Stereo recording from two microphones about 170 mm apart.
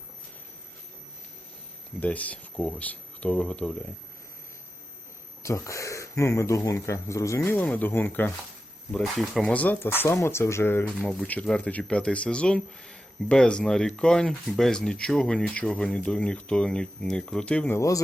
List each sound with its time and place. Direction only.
2.0 s speech: 10° left (ahead or behind)
5.4 s speech: 20° left (ahead or behind)
17.7 s speech: 20° left (ahead or behind)